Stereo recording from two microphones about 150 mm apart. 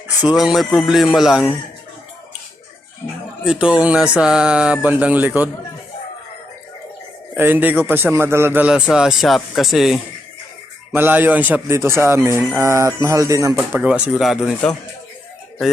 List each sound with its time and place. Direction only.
0.3 s speech: centre (ahead or behind)
3.4 s a man's voice: 5° right (ahead or behind)
7.3 s a man's voice: 15° right (ahead or behind)
10.9 s a man's voice: 15° right (ahead or behind)
13.6 s speech: 10° right (ahead or behind)